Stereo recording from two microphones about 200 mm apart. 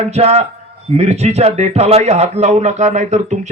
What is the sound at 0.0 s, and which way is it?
A man's voice, 30° right (ahead or behind).